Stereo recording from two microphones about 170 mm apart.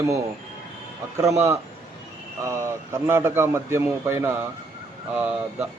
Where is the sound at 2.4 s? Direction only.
15° right (ahead or behind).